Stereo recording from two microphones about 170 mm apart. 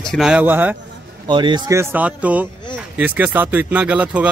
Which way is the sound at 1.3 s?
25° right (ahead or behind).